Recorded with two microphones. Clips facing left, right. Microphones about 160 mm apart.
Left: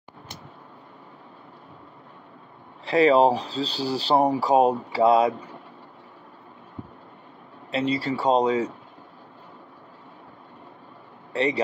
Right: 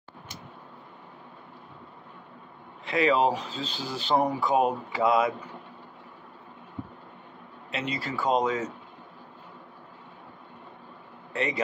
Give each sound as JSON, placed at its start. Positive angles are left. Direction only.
{"t": 2.8, "sound": "speech", "side_deg": 35}
{"t": 7.7, "sound": "speech", "side_deg": 30}
{"t": 11.3, "sound": "speech", "side_deg": 35}